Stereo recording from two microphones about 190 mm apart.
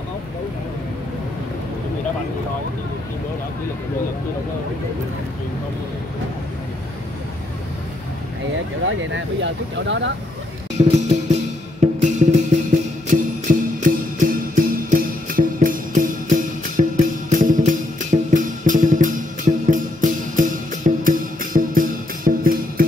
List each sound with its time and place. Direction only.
8.8 s speech: 75° right (ahead or behind)
10.9 s music: 40° right (ahead or behind)